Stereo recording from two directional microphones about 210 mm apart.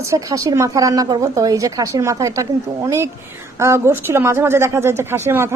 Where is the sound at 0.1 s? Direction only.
15° right (ahead or behind).